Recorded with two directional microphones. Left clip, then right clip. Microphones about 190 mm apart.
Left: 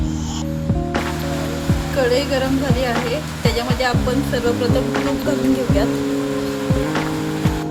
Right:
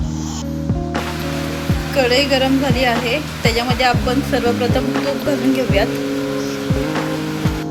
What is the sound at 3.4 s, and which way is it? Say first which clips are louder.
Speech: right 4 dB; 15° right (ahead or behind).